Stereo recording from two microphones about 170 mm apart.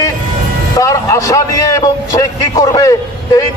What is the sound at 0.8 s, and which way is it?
A man's voice, 20° left (ahead or behind).